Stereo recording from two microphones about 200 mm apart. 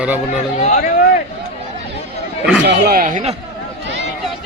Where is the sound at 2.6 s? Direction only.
55° right (ahead or behind); by 3.4 s 35° right (ahead or behind).